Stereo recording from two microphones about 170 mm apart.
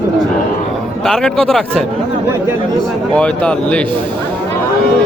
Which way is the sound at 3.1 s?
5° left (ahead or behind).